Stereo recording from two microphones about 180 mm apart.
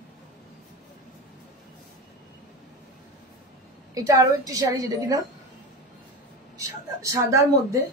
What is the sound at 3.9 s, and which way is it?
A woman's voice, 20° right (ahead or behind).